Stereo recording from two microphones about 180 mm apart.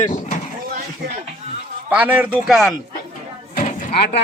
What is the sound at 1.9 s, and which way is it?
Speech, 10° right (ahead or behind).